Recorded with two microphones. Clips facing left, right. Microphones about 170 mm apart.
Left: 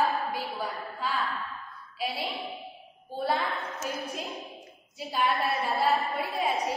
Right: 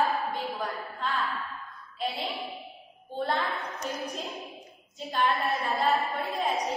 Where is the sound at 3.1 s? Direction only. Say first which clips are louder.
Left 1 dB; 5° left (ahead or behind).